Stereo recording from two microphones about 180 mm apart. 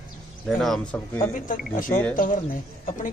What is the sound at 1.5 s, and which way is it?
Speech, 50° left (ahead or behind).